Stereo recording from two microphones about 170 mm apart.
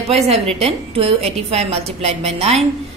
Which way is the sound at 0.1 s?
35° right (ahead or behind).